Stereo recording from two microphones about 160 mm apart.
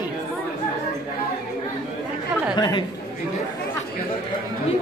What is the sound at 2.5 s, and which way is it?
Chatter, 30° left (ahead or behind).